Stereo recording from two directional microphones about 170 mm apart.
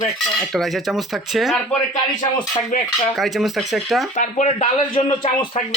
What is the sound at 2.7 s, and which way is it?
Speech, 50° left (ahead or behind).